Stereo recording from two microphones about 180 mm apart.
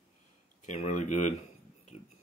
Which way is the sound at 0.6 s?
40° left (ahead or behind).